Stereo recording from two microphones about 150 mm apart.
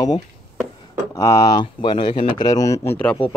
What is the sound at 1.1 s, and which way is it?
Speech, 20° left (ahead or behind).